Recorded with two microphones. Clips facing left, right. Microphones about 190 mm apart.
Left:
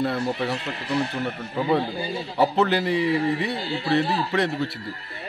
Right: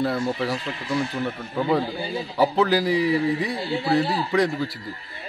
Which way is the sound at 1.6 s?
Centre (ahead or behind).